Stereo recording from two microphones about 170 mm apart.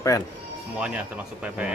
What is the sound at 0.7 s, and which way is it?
Speech, 5° right (ahead or behind).